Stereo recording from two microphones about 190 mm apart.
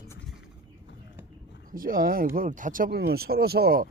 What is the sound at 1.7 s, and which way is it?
Speech, 50° right (ahead or behind).